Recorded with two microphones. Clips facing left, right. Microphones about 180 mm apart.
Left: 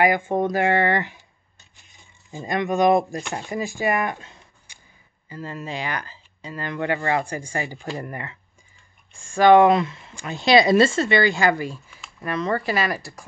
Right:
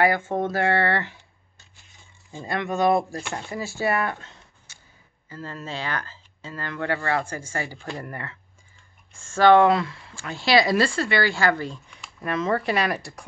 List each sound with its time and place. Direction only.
0.0 s speech: 15° left (ahead or behind)